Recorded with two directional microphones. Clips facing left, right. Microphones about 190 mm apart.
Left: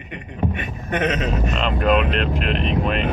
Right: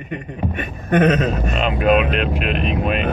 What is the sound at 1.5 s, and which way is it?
Speech, 10° right (ahead or behind).